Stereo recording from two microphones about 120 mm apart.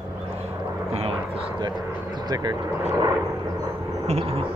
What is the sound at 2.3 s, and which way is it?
Speech, 35° right (ahead or behind).